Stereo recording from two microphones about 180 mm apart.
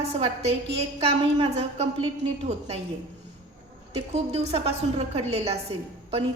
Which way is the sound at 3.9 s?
35° right (ahead or behind).